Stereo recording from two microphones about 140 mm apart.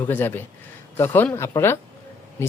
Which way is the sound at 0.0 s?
15° left (ahead or behind).